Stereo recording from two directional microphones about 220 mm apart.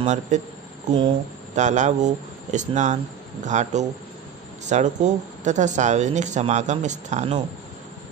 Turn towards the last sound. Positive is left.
turn(degrees=-30)  # may be behind; listen again after turning